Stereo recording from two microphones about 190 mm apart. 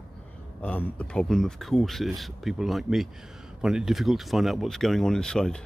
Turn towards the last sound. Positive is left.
turn(degrees=5)  # may be behind; listen again after turning